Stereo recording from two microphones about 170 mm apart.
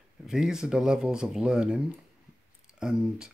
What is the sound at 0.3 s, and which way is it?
Speech, 5° right (ahead or behind).